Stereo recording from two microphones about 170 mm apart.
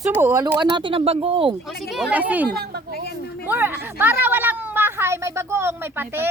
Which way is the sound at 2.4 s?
70° right (ahead or behind).